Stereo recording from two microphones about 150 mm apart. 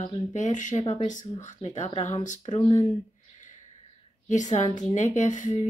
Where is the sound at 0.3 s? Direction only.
55° left (ahead or behind).